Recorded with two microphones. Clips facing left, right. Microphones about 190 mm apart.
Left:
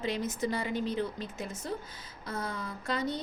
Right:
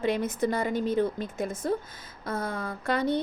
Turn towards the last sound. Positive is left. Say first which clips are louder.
# right 6 dB
turn(degrees=-60)  # may be behind; listen again after turning